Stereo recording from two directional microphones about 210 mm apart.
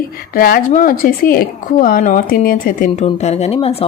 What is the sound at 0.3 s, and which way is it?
Speech, 45° left (ahead or behind).